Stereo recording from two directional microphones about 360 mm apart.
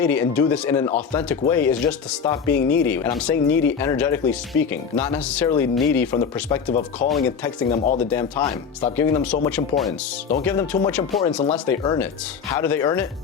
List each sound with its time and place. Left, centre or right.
0.0 s speech: centre